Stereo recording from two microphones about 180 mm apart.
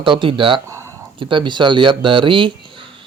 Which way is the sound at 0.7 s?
15° right (ahead or behind).